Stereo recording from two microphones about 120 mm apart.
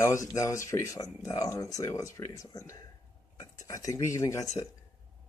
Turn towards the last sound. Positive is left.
turn(degrees=25)  # may be behind; listen again after turning